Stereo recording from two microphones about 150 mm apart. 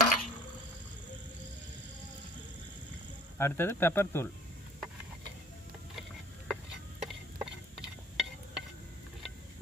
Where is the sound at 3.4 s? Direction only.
15° left (ahead or behind).